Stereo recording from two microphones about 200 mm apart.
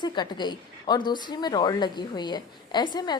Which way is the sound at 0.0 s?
20° left (ahead or behind).